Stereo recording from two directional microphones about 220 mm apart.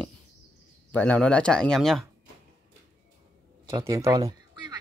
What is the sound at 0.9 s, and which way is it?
Speech, 5° left (ahead or behind).